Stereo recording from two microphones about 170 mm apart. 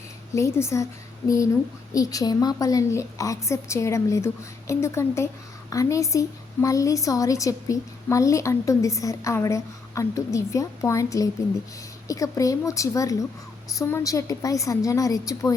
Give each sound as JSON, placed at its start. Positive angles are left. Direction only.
{"t": 0.3, "sound": "a woman's voice", "side_deg": 15}
{"t": 1.9, "sound": "a woman's voice", "side_deg": 20}